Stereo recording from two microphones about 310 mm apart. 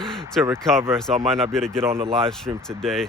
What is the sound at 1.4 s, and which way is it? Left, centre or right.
Speech, centre.